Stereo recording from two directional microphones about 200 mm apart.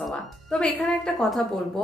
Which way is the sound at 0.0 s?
5° left (ahead or behind).